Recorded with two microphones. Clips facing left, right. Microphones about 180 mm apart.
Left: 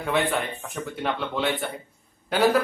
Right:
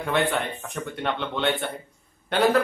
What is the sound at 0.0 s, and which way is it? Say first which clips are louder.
Speech: even; centre (ahead or behind).